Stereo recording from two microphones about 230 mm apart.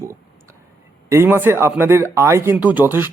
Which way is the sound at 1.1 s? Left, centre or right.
Centre.